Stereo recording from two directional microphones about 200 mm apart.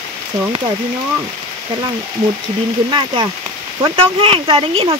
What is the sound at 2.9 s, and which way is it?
Speech, 25° right (ahead or behind).